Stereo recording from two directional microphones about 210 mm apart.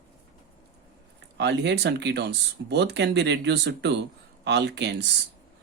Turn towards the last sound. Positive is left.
turn(degrees=-55)  # may be behind; listen again after turning